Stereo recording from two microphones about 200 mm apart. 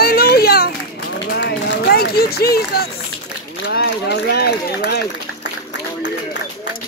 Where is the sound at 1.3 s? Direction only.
55° left (ahead or behind).